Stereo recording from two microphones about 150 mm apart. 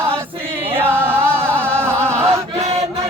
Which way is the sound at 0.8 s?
15° right (ahead or behind).